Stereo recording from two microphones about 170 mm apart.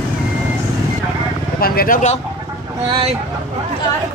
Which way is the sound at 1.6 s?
60° left (ahead or behind).